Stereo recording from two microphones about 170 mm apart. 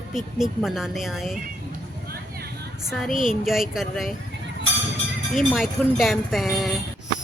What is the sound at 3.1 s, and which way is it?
Speech, 50° left (ahead or behind).